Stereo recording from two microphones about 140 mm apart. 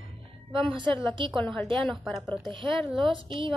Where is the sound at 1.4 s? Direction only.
5° left (ahead or behind).